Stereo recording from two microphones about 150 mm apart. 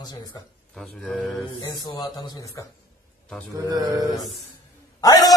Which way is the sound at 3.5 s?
25° right (ahead or behind).